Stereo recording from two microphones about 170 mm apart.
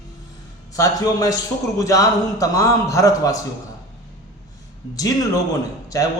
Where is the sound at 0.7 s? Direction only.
20° left (ahead or behind).